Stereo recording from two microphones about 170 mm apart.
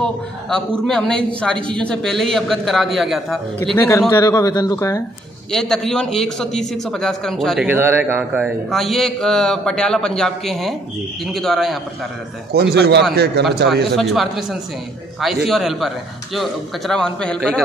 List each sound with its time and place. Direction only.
0.0 s a man's voice: 5° left (ahead or behind)
3.7 s a man's voice: 15° left (ahead or behind)
5.5 s a man's voice: 5° left (ahead or behind)
7.6 s a man's voice: 10° right (ahead or behind)
12.7 s speech: 75° right (ahead or behind)
13.8 s a man's voice: centre (ahead or behind)